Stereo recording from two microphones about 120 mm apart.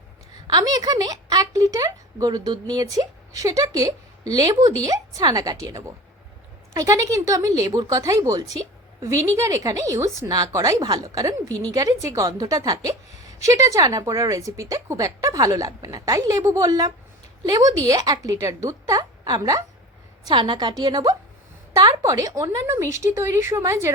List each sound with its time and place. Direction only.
0.4 s a woman's voice: 35° right (ahead or behind)
20.2 s a woman's voice: 40° right (ahead or behind); by 23.9 s 25° right (ahead or behind)